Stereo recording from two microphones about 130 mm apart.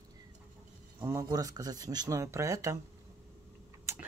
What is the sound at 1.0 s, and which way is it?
Speech, 20° right (ahead or behind).